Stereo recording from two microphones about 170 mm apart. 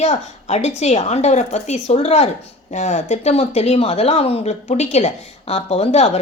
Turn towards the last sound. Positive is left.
turn(degrees=40)  # may be behind; listen again after turning